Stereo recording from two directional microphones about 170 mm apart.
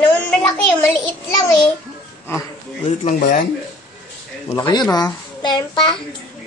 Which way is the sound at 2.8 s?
45° left (ahead or behind).